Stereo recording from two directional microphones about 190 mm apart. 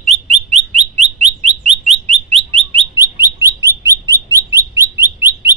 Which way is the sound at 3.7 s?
15° right (ahead or behind).